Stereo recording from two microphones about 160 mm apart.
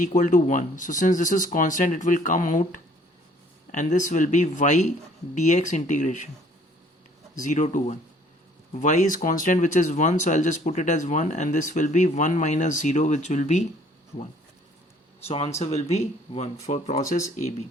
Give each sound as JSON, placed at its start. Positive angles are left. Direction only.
{"t": 0.0, "sound": "speech", "side_deg": 55}
{"t": 7.3, "sound": "speech", "side_deg": 55}
{"t": 15.3, "sound": "speech", "side_deg": 40}